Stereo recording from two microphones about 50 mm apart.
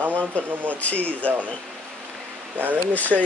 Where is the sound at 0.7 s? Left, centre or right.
Left.